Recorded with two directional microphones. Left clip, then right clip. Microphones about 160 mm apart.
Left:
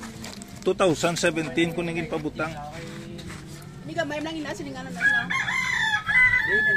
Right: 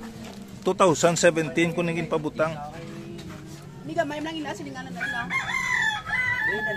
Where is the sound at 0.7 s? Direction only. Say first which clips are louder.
Right 2 dB; 25° right (ahead or behind).